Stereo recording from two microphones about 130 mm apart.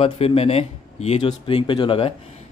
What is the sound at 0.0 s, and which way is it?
A man's voice, 45° left (ahead or behind).